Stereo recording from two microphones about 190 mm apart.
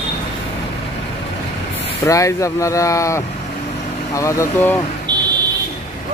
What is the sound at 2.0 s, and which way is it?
Speech, 15° left (ahead or behind).